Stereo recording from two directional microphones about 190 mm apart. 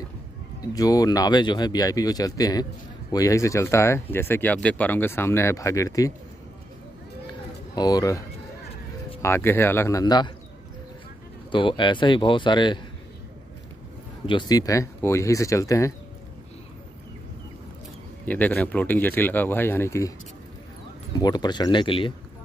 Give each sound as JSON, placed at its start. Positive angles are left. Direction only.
{"t": 0.7, "sound": "speech", "side_deg": 20}
{"t": 7.7, "sound": "speech", "side_deg": 20}
{"t": 9.2, "sound": "speech", "side_deg": 10}
{"t": 11.5, "sound": "speech", "side_deg": 25}
{"t": 14.2, "sound": "speech", "side_deg": 20}
{"t": 18.2, "sound": "speech", "side_deg": 10}
{"t": 21.1, "sound": "speech", "side_deg": 20}